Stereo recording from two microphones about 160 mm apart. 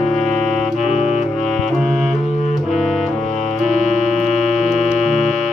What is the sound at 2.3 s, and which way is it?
Music, 45° left (ahead or behind).